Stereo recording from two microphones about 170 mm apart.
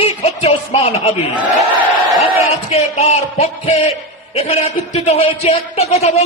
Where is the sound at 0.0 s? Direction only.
35° left (ahead or behind).